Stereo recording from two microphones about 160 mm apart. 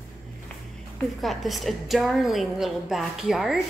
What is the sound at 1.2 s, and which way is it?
A woman's voice, centre (ahead or behind).